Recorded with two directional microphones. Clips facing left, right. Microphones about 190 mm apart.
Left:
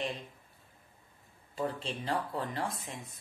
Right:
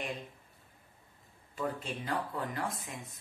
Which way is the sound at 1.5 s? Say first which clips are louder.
Left 1 dB; 30° left (ahead or behind).